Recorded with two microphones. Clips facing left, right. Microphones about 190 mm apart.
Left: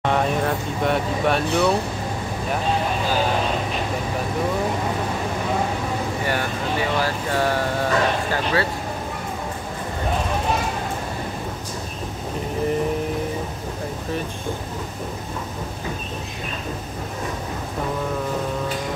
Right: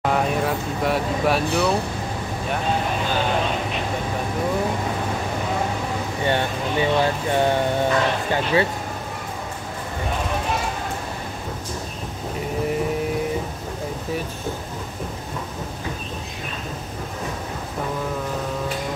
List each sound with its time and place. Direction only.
0.0 s speech: 5° right (ahead or behind)
6.2 s speech: 25° right (ahead or behind)